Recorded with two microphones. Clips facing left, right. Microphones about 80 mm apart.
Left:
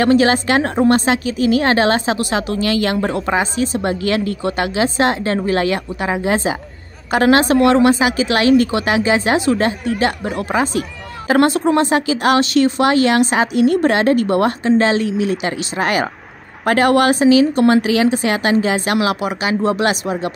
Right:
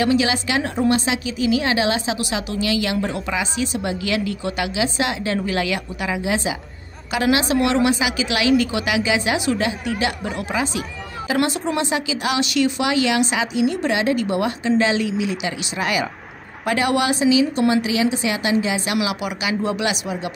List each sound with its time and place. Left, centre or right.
0.0 s a woman's voice: left